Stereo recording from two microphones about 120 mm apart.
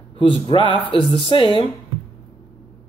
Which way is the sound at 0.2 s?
45° left (ahead or behind).